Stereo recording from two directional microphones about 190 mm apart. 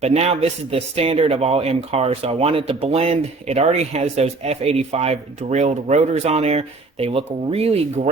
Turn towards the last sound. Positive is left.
turn(degrees=-30)  # may be behind; listen again after turning